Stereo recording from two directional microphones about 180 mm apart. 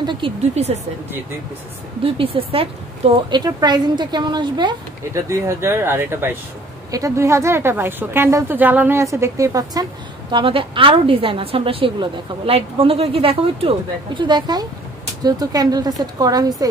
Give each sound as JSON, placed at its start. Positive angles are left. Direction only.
{"t": 0.0, "sound": "speech", "side_deg": -25}
{"t": 2.1, "sound": "a woman's voice", "side_deg": -30}